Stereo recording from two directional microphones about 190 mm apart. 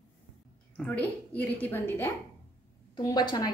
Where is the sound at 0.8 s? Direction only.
5° left (ahead or behind).